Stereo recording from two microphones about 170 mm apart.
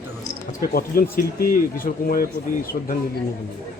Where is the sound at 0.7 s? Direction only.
60° left (ahead or behind).